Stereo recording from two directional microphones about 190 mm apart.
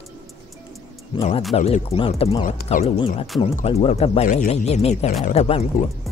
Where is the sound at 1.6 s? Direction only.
30° left (ahead or behind).